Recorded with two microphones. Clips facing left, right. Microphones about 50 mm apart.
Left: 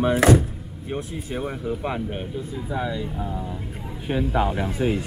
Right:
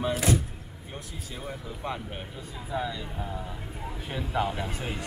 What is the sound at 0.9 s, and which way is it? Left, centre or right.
Speech, left.